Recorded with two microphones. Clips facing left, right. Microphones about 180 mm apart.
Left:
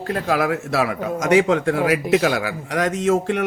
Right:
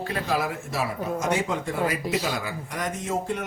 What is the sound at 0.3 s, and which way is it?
A man's voice, 90° left.